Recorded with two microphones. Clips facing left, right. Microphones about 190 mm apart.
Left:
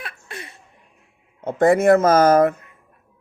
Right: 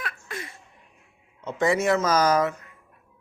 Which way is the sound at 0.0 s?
30° left (ahead or behind).